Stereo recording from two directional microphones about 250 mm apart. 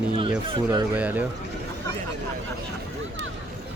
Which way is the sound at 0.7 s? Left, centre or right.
Centre.